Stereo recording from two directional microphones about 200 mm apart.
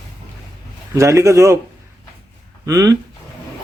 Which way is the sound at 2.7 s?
15° right (ahead or behind).